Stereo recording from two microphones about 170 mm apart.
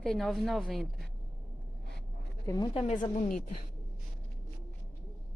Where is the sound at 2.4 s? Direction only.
25° left (ahead or behind).